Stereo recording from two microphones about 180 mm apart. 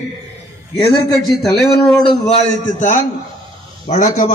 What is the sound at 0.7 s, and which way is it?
Speech, 25° left (ahead or behind).